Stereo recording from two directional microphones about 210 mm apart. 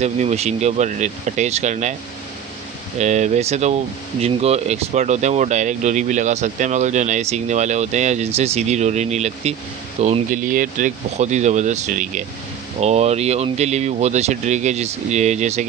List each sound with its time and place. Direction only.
0.0 s speech: 30° right (ahead or behind)
3.0 s speech: 35° right (ahead or behind)